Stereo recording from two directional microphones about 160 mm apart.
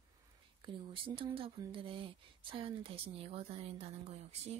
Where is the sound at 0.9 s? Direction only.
35° right (ahead or behind).